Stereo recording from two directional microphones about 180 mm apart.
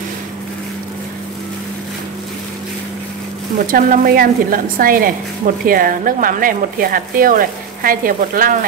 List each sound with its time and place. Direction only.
3.5 s speech: 50° right (ahead or behind)